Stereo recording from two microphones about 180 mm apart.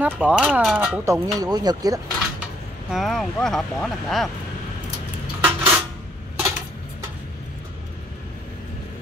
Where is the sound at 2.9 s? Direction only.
Centre (ahead or behind).